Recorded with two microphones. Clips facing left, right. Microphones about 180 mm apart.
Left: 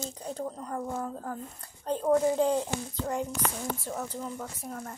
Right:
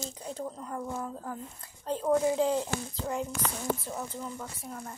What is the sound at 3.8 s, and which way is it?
A woman's voice, 45° left (ahead or behind).